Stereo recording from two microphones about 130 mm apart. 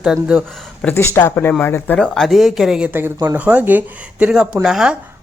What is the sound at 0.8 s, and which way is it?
Speech, 20° left (ahead or behind).